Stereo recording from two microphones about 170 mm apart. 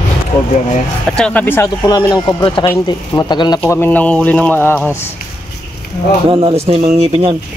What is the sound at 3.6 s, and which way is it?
Speech, 15° left (ahead or behind).